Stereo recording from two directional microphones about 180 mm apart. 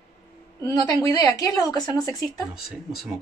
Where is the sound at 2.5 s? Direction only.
5° right (ahead or behind).